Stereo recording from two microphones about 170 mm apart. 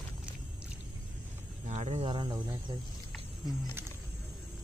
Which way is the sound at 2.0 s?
25° right (ahead or behind).